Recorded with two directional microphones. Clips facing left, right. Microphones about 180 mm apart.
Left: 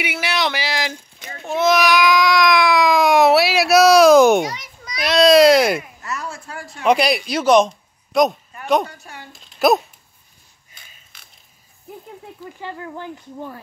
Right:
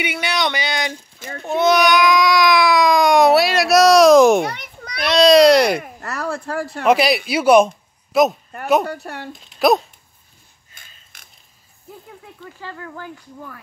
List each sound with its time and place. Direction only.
0.0 s speech: 5° left (ahead or behind)
4.5 s children playing: 60° right (ahead or behind)
5.0 s speech: centre (ahead or behind)
5.8 s speech: 50° right (ahead or behind)
6.8 s speech: centre (ahead or behind)
8.8 s speech: 65° right (ahead or behind)
9.5 s a sound: centre (ahead or behind)
12.5 s speech: 20° left (ahead or behind)